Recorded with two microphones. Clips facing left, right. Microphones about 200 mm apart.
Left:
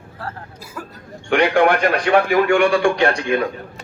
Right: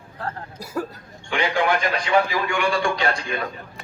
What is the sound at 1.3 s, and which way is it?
A man's voice, 60° left (ahead or behind).